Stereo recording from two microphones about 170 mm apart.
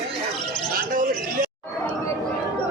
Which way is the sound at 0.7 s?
55° right (ahead or behind).